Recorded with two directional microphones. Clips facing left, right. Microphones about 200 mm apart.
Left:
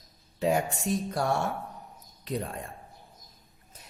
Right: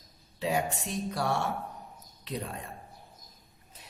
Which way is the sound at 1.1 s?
50° left (ahead or behind).